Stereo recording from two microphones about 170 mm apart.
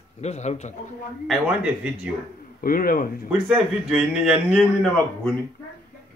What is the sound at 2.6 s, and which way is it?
Speech, 55° left (ahead or behind).